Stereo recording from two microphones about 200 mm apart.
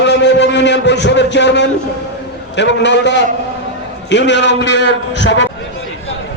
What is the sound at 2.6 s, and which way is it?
A man's voice, 60° left (ahead or behind).